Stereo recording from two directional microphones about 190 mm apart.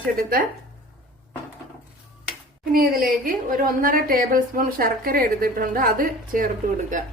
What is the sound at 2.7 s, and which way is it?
A woman's voice, 50° right (ahead or behind).